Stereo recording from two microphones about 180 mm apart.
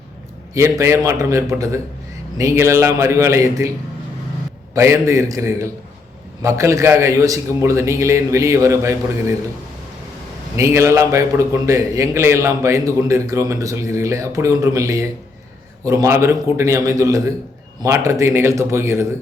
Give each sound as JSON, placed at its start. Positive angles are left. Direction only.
{"t": 0.5, "sound": "a man's voice", "side_deg": -15}
{"t": 4.7, "sound": "a man's voice", "side_deg": -15}
{"t": 10.6, "sound": "a man's voice", "side_deg": -15}